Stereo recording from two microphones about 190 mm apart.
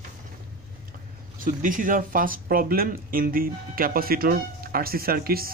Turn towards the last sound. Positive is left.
turn(degrees=-50)  # may be behind; listen again after turning